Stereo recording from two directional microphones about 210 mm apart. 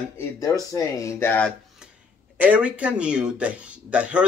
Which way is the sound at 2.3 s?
10° right (ahead or behind).